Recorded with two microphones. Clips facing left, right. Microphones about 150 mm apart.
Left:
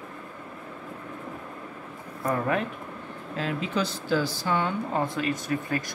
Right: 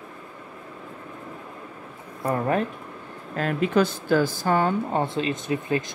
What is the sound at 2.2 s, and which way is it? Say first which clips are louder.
Speech: right 3 dB; 35° right (ahead or behind).